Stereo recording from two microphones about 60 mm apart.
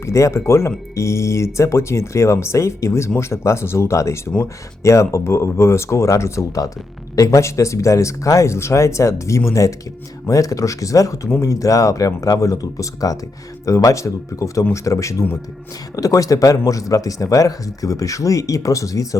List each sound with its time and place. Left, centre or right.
0.0 s speech: left
11.3 s speech: left
16.0 s speech: left